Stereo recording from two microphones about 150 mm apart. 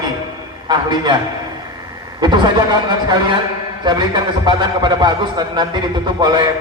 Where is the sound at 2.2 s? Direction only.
30° right (ahead or behind).